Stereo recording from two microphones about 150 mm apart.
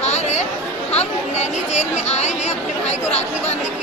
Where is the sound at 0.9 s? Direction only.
50° left (ahead or behind).